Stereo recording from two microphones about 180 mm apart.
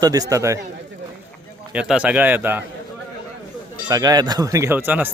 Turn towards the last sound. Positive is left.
turn(degrees=-10)  # may be behind; listen again after turning